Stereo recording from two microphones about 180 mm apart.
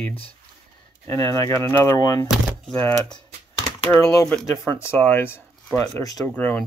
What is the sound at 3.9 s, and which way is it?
Speech, 5° left (ahead or behind).